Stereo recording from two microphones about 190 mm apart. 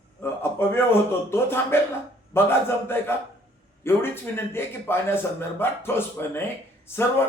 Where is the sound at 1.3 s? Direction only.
10° left (ahead or behind).